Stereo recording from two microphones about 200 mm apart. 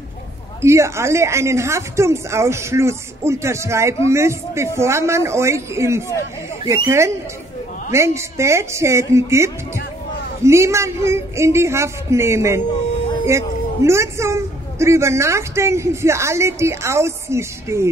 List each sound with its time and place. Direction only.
0.6 s a woman's voice: 15° right (ahead or behind)
13.8 s a woman's voice: 15° right (ahead or behind)